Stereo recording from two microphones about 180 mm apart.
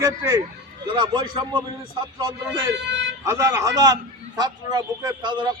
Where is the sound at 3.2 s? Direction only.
15° right (ahead or behind).